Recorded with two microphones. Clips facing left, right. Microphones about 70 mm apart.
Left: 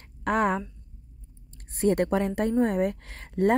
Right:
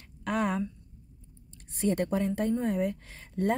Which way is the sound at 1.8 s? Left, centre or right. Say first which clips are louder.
Left 5 dB; left.